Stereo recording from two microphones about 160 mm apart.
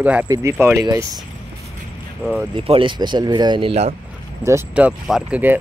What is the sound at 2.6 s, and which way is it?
Speech, 35° right (ahead or behind).